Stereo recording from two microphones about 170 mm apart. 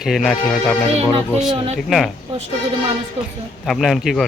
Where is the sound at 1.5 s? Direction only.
30° right (ahead or behind).